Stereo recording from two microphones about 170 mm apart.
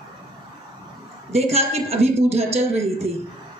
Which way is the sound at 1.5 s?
35° right (ahead or behind).